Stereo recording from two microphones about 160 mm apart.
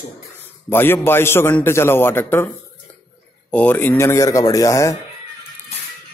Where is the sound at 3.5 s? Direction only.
10° left (ahead or behind).